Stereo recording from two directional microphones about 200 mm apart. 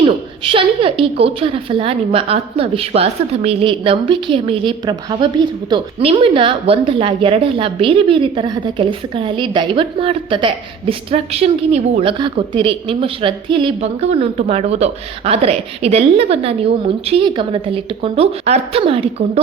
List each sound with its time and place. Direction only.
0.0 s a woman's voice: 25° right (ahead or behind)